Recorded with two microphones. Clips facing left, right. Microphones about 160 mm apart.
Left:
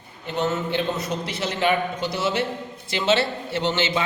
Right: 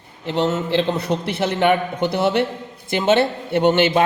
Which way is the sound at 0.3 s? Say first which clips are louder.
Right 5 dB; 85° right.